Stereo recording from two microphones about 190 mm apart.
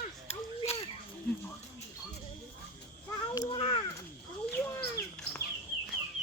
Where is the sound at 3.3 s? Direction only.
25° left (ahead or behind).